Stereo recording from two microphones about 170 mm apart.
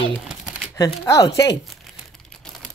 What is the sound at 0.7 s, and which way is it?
Speech, 20° left (ahead or behind).